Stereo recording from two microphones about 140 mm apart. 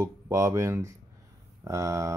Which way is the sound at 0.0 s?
20° right (ahead or behind).